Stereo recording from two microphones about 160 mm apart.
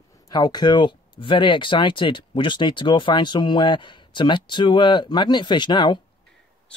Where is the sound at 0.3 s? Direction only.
25° left (ahead or behind).